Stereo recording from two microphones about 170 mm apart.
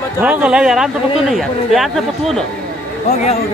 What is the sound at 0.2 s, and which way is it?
Speech, 5° right (ahead or behind).